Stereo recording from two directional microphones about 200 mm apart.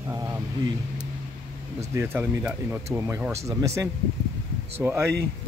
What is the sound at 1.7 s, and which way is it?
Speech, 10° right (ahead or behind).